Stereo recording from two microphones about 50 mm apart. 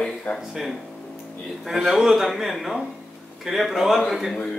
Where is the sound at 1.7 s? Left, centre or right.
Centre.